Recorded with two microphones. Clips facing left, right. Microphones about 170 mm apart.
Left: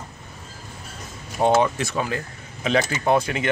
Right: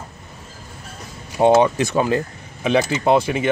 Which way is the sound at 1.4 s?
20° right (ahead or behind).